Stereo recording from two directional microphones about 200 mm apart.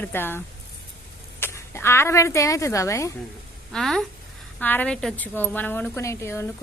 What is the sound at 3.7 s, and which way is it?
A woman's voice, centre (ahead or behind).